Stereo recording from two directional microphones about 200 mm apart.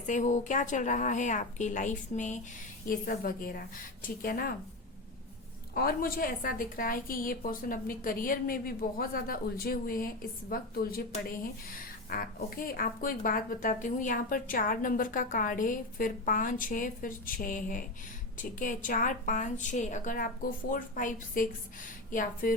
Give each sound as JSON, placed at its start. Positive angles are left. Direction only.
{"t": 0.0, "sound": "a woman's voice", "side_deg": 40}
{"t": 5.7, "sound": "a woman's voice", "side_deg": 45}